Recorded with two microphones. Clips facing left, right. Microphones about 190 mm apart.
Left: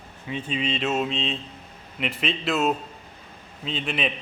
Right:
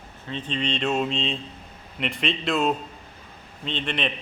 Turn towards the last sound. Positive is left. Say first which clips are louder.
# even
turn(degrees=5)  # may be behind; listen again after turning